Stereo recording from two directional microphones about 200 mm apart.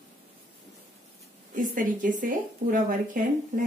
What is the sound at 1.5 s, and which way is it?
Speech, 40° right (ahead or behind).